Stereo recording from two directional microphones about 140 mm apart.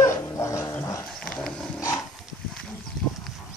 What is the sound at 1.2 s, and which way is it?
Dog, 5° left (ahead or behind).